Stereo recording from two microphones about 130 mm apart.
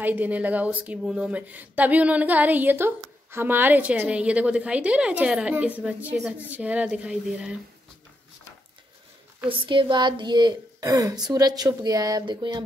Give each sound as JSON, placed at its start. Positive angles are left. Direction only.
{"t": 0.0, "sound": "speech", "side_deg": -15}
{"t": 9.5, "sound": "speech", "side_deg": -40}